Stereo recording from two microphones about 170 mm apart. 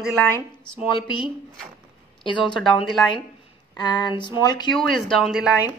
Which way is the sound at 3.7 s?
25° left (ahead or behind).